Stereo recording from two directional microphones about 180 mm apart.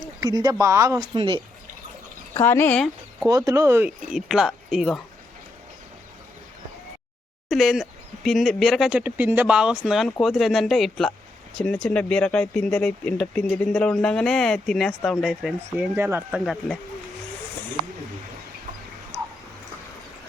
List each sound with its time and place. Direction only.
0.2 s speech: 20° right (ahead or behind)
2.3 s speech: 15° left (ahead or behind)
3.2 s speech: 20° right (ahead or behind); by 4.9 s centre (ahead or behind)
7.5 s speech: centre (ahead or behind)
16.0 s speech: 15° right (ahead or behind)